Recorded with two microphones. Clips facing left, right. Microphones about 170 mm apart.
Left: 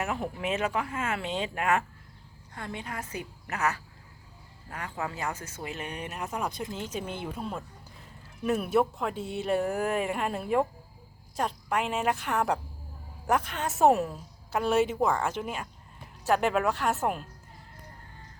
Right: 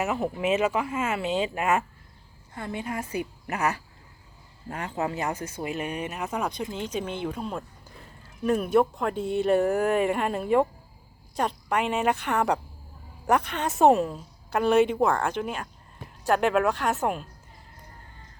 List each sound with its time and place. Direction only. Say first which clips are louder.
0.0 s a woman's voice: right 5 dB; 5° right (ahead or behind)